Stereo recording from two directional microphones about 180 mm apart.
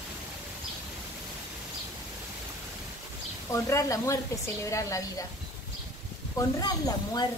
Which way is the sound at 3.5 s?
15° left (ahead or behind).